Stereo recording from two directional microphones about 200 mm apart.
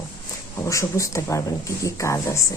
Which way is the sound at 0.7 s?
15° left (ahead or behind).